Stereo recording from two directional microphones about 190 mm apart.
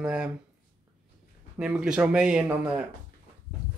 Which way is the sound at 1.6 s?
5° right (ahead or behind).